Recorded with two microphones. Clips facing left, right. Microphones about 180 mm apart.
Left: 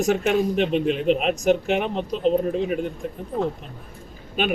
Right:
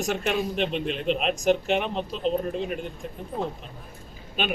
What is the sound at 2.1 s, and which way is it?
Speech, 50° left (ahead or behind).